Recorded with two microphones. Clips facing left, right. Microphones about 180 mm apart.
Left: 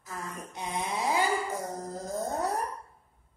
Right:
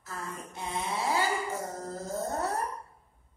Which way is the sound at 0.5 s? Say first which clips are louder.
Left 1 dB; 15° left (ahead or behind).